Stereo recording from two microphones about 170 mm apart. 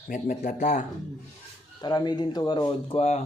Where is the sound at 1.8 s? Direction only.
25° left (ahead or behind).